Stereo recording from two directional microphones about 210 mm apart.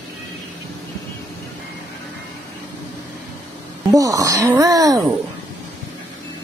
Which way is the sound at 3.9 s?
15° right (ahead or behind).